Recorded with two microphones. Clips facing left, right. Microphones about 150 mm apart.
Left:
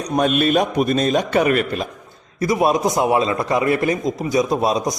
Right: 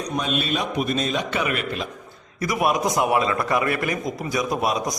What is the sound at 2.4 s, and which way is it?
A man's voice, 25° left (ahead or behind).